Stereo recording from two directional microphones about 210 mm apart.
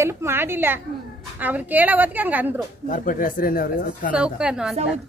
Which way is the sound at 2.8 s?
40° left (ahead or behind).